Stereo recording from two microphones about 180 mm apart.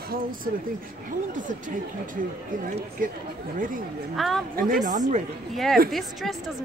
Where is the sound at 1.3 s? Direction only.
45° right (ahead or behind).